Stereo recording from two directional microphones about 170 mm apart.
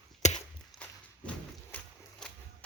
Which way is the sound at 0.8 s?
10° left (ahead or behind).